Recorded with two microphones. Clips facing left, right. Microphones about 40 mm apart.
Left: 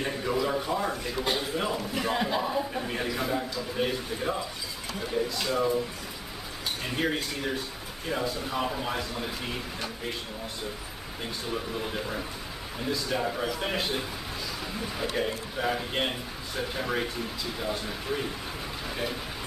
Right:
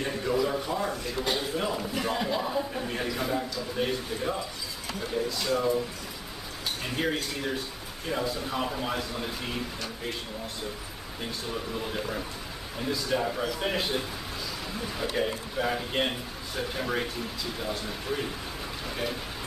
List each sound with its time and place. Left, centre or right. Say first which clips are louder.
0.0 s a man's voice: right 1 dB; centre
6.8 s a man's voice: even; centre
11.5 s a man's voice: left 1 dB; centre